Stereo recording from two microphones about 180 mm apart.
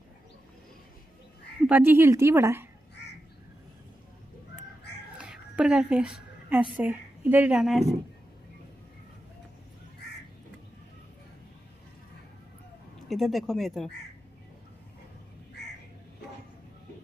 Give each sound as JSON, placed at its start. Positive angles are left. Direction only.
{"t": 1.7, "sound": "a woman's voice", "side_deg": -10}
{"t": 5.1, "sound": "a woman's voice", "side_deg": -5}
{"t": 13.1, "sound": "speech", "side_deg": 0}